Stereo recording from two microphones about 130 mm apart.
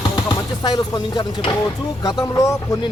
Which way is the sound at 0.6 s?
35° left (ahead or behind).